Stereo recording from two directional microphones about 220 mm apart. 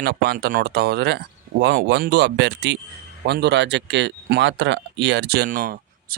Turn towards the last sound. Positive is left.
turn(degrees=-40)  # may be behind; listen again after turning